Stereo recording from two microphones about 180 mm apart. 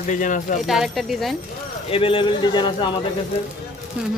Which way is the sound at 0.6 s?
Centre (ahead or behind).